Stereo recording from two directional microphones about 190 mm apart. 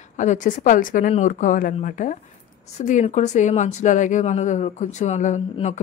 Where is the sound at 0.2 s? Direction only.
40° left (ahead or behind).